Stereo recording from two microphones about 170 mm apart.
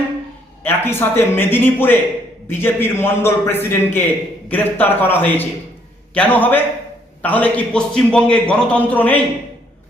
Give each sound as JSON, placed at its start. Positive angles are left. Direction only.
{"t": 0.6, "sound": "a man's voice", "side_deg": 15}